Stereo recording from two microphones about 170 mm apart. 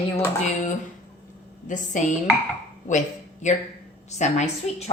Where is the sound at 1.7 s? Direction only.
45° left (ahead or behind).